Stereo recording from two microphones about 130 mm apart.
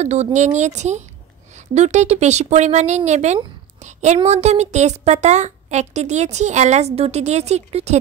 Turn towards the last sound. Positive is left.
turn(degrees=-55)  # may be behind; listen again after turning